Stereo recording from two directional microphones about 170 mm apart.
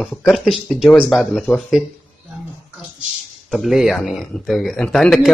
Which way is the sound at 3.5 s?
Centre (ahead or behind).